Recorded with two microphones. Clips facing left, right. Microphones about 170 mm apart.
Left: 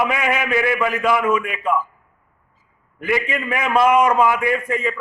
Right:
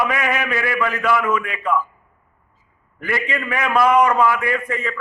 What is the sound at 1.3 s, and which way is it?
Speech, 10° left (ahead or behind).